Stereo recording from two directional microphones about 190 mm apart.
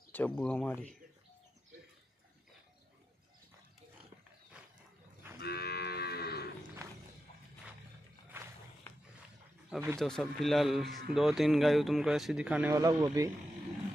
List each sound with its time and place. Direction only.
0.1 s speech: 5° left (ahead or behind)
4.6 s wild animals: 5° right (ahead or behind)
5.4 s moo: 60° left (ahead or behind)
9.7 s speech: 10° right (ahead or behind)
9.9 s speech: 5° left (ahead or behind); by 13.3 s 15° right (ahead or behind)